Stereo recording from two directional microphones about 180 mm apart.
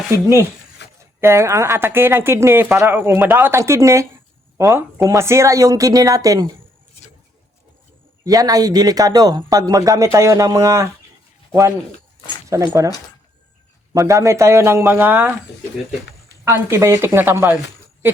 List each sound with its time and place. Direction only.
0.1 s speech: 15° right (ahead or behind)
0.8 s a sound: 75° left (ahead or behind)
1.2 s speech: 15° right (ahead or behind)
8.2 s speech: 20° right (ahead or behind)
12.5 s speech: 20° right (ahead or behind)
13.9 s speech: 20° right (ahead or behind)
16.4 s speech: 15° right (ahead or behind)